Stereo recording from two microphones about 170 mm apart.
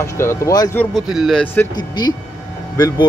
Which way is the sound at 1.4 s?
10° left (ahead or behind).